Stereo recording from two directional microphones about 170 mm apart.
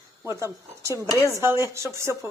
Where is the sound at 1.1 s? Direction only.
20° left (ahead or behind).